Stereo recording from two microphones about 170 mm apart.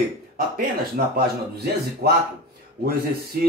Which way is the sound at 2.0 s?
65° right (ahead or behind).